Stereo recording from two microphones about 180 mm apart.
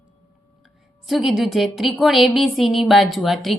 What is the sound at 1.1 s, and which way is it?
A woman's voice, centre (ahead or behind).